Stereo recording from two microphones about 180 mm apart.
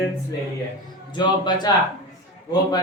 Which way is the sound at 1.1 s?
25° left (ahead or behind).